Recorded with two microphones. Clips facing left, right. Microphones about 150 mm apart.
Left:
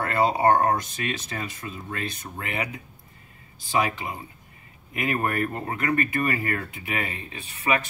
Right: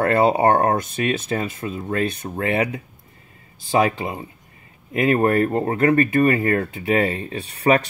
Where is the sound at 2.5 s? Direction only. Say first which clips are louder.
Right 10 dB; 30° right (ahead or behind).